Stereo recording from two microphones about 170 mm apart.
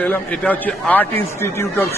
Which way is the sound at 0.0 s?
10° left (ahead or behind).